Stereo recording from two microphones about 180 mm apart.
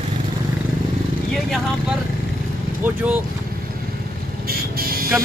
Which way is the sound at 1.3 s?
Centre (ahead or behind).